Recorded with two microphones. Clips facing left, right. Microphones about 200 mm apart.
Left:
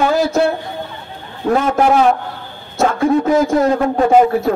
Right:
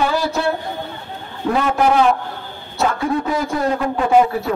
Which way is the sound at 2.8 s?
45° left (ahead or behind).